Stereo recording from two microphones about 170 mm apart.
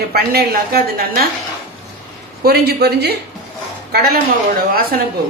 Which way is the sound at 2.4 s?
70° right (ahead or behind).